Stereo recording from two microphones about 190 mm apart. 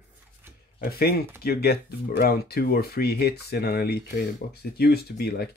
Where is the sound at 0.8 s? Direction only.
55° left (ahead or behind).